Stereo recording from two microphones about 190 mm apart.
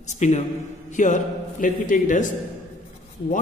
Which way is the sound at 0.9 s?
40° left (ahead or behind).